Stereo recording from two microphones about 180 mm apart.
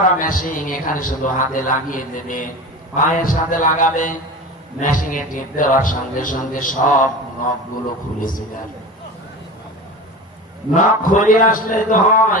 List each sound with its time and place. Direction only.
0.2 s a man's voice: 50° left (ahead or behind)
10.8 s a man's voice: 45° left (ahead or behind)